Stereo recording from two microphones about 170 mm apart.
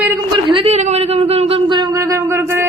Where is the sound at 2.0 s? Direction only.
15° right (ahead or behind).